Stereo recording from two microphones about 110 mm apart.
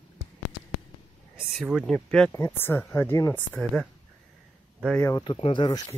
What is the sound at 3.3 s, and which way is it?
Speech, 10° left (ahead or behind).